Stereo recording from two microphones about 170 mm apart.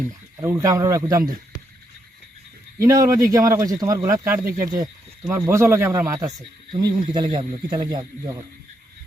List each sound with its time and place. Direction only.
0.3 s speech: 20° right (ahead or behind)
2.7 s speech: 20° right (ahead or behind)